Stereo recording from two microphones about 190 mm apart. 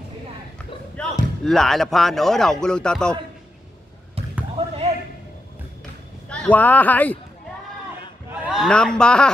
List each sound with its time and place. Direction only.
1.4 s speech: centre (ahead or behind)
4.6 s basketball bounce: 35° right (ahead or behind)
6.2 s speech: 5° left (ahead or behind)
8.3 s speech: 5° right (ahead or behind)